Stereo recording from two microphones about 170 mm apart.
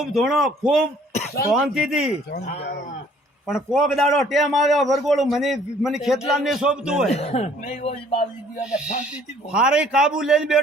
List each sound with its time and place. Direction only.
0.0 s a man's voice: centre (ahead or behind)
3.4 s a man's voice: centre (ahead or behind)
7.1 s speech: 40° left (ahead or behind)
7.6 s speech: 55° left (ahead or behind)
8.6 s a man's voice: 5° right (ahead or behind)